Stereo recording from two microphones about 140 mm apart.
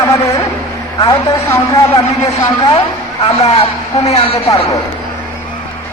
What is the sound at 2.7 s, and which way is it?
A man's voice, 40° left (ahead or behind).